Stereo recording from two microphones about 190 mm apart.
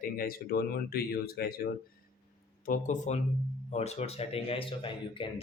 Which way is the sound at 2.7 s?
40° left (ahead or behind).